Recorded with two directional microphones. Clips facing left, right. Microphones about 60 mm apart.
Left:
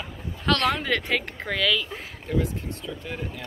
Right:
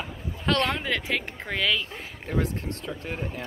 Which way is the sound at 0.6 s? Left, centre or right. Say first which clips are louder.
Left 2 dB; centre.